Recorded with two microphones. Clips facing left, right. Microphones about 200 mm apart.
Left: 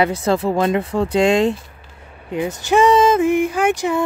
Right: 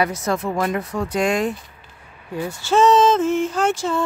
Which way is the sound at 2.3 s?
20° left (ahead or behind).